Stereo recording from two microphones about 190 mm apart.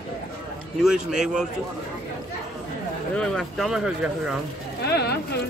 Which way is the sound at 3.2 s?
Centre (ahead or behind).